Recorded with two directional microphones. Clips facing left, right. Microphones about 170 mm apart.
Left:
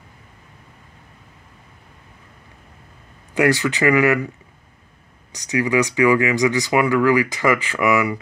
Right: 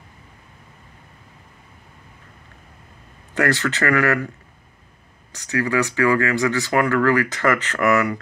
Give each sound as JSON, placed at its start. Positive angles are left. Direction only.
{"t": 3.3, "sound": "speech", "side_deg": 10}
{"t": 5.3, "sound": "speech", "side_deg": 15}